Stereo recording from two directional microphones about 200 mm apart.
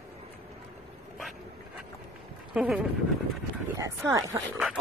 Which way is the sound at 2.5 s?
5° right (ahead or behind).